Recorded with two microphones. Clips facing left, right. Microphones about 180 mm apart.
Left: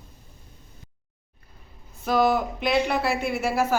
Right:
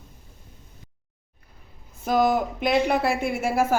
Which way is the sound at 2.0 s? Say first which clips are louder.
Even; 50° right (ahead or behind).